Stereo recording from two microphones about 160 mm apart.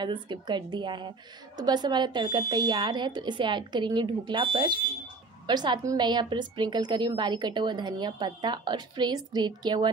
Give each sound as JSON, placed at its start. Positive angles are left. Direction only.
{"t": 0.0, "sound": "a woman's voice", "side_deg": -30}